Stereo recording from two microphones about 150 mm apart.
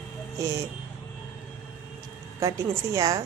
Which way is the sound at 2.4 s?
20° right (ahead or behind).